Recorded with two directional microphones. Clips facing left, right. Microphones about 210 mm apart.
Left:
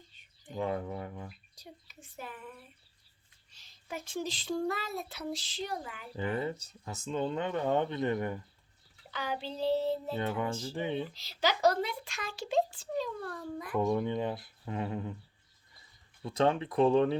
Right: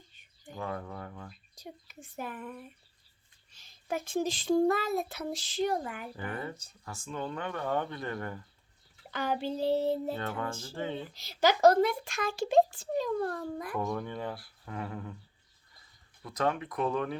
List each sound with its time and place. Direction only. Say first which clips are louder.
0.5 s speech: left 4 dB; 20° left (ahead or behind)
1.5 s speech: right 5 dB; 50° right (ahead or behind)
3.6 s speech: right 7 dB; 50° right (ahead or behind)
6.1 s speech: left 9 dB; 20° left (ahead or behind)
9.0 s speech: right 5 dB; 50° right (ahead or behind)
10.2 s speech: left 3 dB; 15° left (ahead or behind)
11.1 s speech: right 5 dB; 50° right (ahead or behind)
13.7 s speech: left 7 dB; 20° left (ahead or behind)
16.2 s speech: left 3 dB; 30° left (ahead or behind)